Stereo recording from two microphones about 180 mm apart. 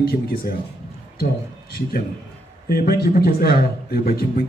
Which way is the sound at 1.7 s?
55° left (ahead or behind).